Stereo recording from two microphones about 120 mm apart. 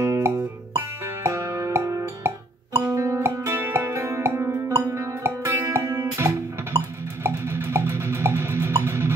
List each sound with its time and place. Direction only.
0.0 s music: 25° right (ahead or behind)